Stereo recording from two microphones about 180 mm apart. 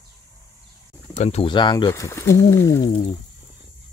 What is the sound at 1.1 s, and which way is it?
Speech, 35° left (ahead or behind).